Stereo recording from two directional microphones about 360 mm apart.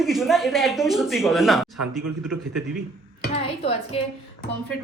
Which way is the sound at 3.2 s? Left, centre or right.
Centre.